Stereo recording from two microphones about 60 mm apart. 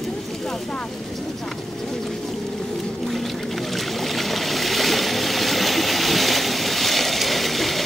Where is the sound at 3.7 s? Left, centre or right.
Centre.